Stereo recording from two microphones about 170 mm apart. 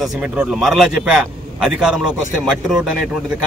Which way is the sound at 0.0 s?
Centre (ahead or behind).